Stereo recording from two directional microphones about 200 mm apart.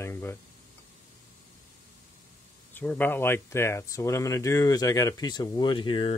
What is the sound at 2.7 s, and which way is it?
Speech, 10° left (ahead or behind).